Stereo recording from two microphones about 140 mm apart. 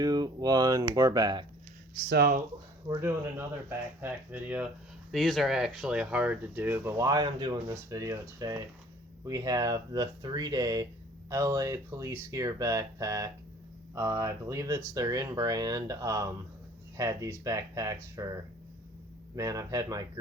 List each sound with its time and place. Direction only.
0.0 s speech: 30° right (ahead or behind)
2.8 s speech: 20° right (ahead or behind)
5.1 s speech: centre (ahead or behind); by 18.3 s 25° right (ahead or behind)
19.4 s speech: 25° right (ahead or behind)